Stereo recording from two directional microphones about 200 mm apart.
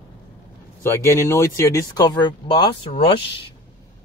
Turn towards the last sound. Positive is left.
turn(degrees=25)  # may be behind; listen again after turning